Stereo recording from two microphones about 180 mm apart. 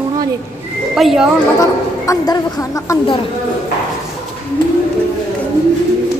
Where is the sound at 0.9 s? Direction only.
Centre (ahead or behind).